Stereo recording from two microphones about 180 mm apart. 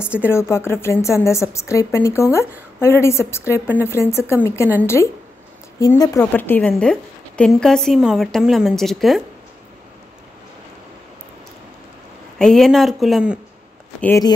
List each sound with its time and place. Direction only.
0.3 s a woman's voice: 15° left (ahead or behind)
12.4 s a woman's voice: centre (ahead or behind)
14.0 s a woman's voice: 15° left (ahead or behind)